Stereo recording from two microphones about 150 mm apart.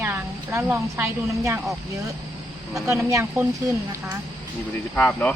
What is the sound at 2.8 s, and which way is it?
Speech, 20° right (ahead or behind).